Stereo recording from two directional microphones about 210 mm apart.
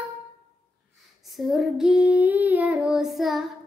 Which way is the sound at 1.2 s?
Centre (ahead or behind).